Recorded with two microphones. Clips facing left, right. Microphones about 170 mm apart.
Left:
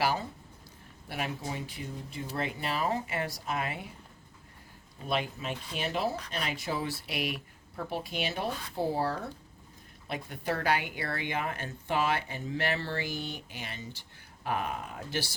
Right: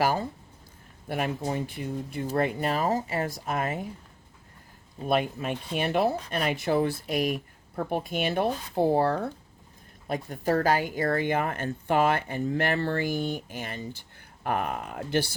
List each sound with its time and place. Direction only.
0.0 s speech: 45° right (ahead or behind)
5.0 s speech: 50° right (ahead or behind)
10.1 s speech: 40° right (ahead or behind)